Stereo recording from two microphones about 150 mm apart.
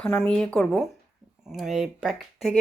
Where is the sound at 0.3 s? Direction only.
5° left (ahead or behind).